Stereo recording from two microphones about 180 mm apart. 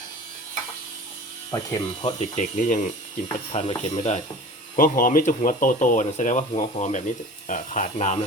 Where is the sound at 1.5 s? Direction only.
20° left (ahead or behind).